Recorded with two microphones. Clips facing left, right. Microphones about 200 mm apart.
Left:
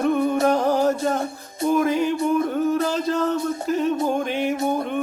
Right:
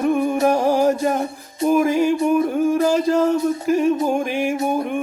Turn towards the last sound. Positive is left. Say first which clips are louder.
# right 2 dB
turn(degrees=-10)  # may be behind; listen again after turning